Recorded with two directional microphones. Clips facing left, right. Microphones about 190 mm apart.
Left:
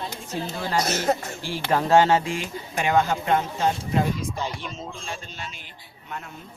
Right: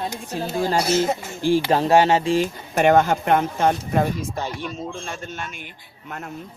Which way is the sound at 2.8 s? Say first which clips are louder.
Right 6 dB; 50° right (ahead or behind).